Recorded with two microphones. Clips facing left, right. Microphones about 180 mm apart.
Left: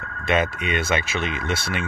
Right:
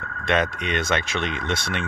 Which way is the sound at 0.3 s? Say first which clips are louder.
Left 1 dB; 5° left (ahead or behind).